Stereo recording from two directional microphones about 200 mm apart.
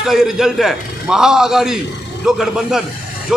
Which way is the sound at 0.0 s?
Centre (ahead or behind).